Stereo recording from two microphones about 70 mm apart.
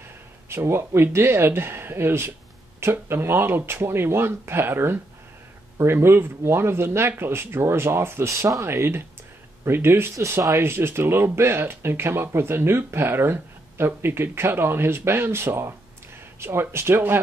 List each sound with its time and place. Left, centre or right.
0.5 s speech: right